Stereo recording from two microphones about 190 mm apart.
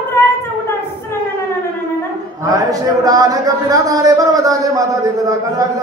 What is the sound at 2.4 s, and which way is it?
Speech, 20° right (ahead or behind).